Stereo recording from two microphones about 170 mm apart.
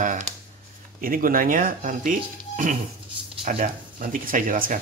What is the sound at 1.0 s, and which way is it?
Speech, 55° right (ahead or behind).